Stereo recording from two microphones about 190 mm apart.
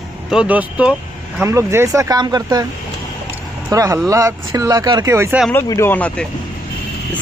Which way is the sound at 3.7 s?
15° right (ahead or behind).